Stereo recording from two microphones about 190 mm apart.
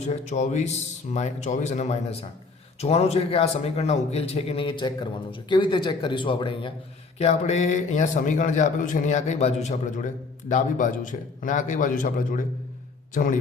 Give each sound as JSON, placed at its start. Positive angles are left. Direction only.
{"t": 0.1, "sound": "a man's voice", "side_deg": 40}